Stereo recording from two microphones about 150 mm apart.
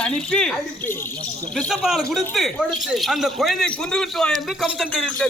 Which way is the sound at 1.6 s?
Centre (ahead or behind).